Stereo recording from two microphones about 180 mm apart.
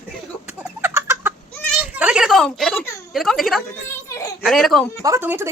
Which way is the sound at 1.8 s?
5° right (ahead or behind).